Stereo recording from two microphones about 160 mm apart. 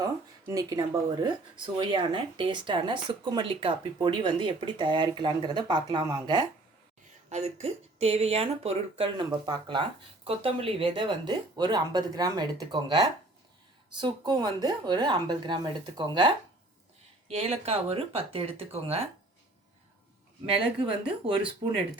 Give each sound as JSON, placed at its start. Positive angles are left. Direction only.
{"t": 0.0, "sound": "speech", "side_deg": -20}
{"t": 7.3, "sound": "speech", "side_deg": -45}
{"t": 17.2, "sound": "speech", "side_deg": -40}
{"t": 20.5, "sound": "speech", "side_deg": -35}